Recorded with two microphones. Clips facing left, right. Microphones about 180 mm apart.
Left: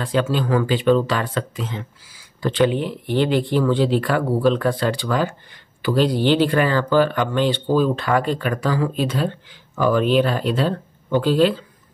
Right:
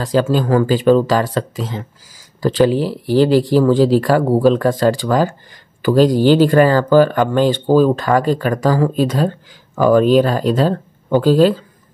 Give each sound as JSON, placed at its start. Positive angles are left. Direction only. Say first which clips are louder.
{"t": 0.0, "sound": "speech", "louder": "right 5 dB", "side_deg": -40}